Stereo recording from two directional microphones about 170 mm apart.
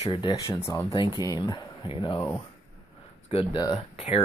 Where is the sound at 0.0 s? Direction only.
30° left (ahead or behind).